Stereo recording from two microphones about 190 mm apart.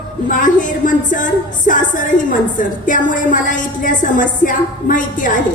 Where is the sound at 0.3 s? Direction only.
45° left (ahead or behind).